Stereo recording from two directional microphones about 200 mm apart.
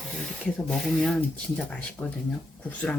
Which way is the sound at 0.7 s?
Centre (ahead or behind).